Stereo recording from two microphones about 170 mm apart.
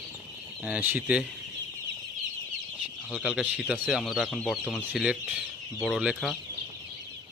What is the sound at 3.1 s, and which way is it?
A man's voice, 5° right (ahead or behind).